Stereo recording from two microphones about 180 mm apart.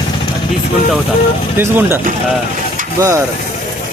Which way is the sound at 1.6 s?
15° right (ahead or behind).